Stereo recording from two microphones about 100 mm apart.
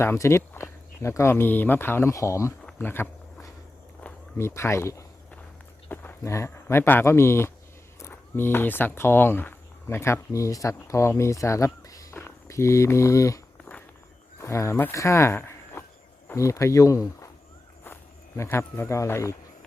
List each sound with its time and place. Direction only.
0.0 s speech: 25° left (ahead or behind)
2.7 s a sound: 20° left (ahead or behind)
4.4 s speech: 25° left (ahead or behind)
5.9 s a sound: 20° left (ahead or behind)
6.3 s speech: 30° left (ahead or behind)
18.5 s speech: 30° left (ahead or behind)